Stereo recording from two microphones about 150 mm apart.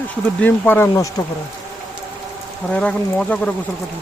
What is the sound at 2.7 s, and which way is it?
Speech, 5° left (ahead or behind).